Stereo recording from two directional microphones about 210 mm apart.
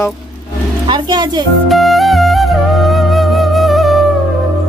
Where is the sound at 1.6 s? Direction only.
Centre (ahead or behind).